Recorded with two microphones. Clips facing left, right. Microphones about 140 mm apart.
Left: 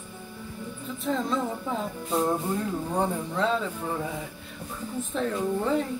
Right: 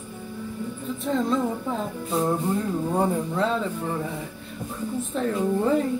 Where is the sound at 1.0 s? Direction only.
Centre (ahead or behind).